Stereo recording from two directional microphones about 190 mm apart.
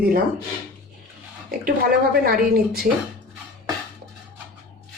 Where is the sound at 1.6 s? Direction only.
50° right (ahead or behind).